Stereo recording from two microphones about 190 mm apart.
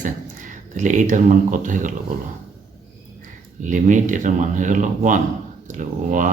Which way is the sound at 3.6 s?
40° right (ahead or behind).